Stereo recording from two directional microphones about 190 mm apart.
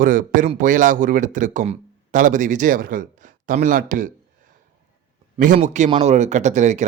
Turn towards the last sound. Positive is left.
turn(degrees=-40)  # may be behind; listen again after turning